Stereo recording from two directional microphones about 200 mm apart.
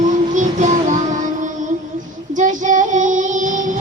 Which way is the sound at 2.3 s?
40° right (ahead or behind).